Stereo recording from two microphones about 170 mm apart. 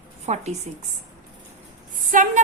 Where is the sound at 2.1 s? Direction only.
50° right (ahead or behind).